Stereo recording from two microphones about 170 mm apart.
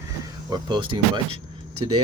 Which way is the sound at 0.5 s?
25° right (ahead or behind).